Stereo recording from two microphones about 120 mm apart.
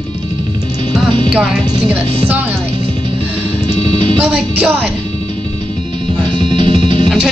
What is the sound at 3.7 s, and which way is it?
Music, 45° right (ahead or behind).